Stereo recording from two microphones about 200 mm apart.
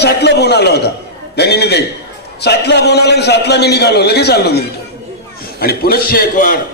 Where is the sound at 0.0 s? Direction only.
55° left (ahead or behind).